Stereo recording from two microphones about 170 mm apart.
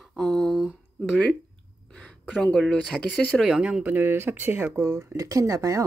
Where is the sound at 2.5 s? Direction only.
5° left (ahead or behind).